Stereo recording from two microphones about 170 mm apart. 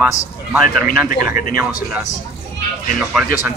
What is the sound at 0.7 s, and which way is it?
Speech, 55° left (ahead or behind).